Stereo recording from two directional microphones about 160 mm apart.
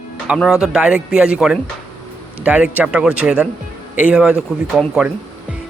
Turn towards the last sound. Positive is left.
turn(degrees=-5)  # may be behind; listen again after turning